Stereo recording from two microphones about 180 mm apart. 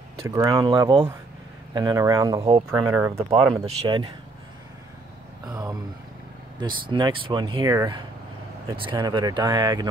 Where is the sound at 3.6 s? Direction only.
25° right (ahead or behind).